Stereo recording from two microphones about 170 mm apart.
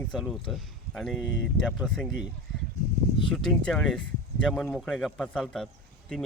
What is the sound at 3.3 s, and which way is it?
Speech, 5° left (ahead or behind).